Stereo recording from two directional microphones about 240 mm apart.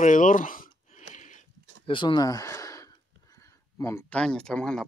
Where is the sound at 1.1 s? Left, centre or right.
Left.